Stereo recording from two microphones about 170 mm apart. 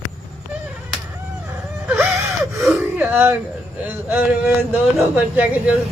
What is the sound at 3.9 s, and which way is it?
Speech, 10° right (ahead or behind).